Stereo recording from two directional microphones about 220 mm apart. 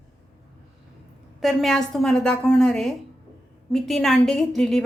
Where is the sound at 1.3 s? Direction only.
Centre (ahead or behind).